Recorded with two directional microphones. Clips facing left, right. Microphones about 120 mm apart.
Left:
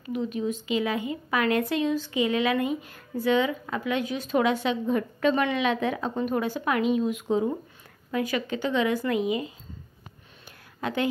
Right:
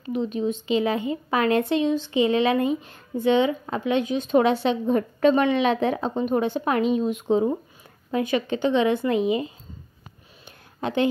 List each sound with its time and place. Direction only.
0.0 s speech: 30° right (ahead or behind)
10.8 s a woman's voice: 25° right (ahead or behind)